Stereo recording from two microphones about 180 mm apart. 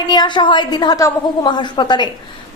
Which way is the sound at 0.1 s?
25° left (ahead or behind).